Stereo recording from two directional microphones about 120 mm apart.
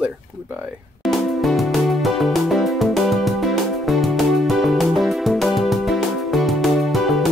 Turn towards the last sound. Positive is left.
turn(degrees=0)  # may be behind; listen again after turning